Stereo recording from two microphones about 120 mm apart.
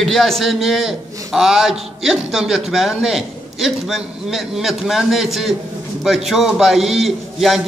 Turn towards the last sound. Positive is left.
turn(degrees=0)  # may be behind; listen again after turning